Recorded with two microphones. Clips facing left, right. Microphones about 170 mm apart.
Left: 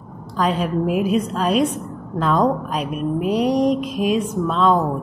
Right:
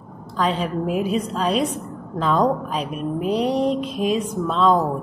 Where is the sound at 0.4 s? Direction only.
10° left (ahead or behind).